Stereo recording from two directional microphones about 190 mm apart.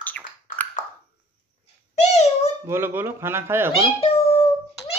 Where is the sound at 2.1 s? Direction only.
35° left (ahead or behind).